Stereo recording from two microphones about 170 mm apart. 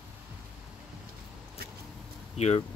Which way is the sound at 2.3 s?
40° left (ahead or behind).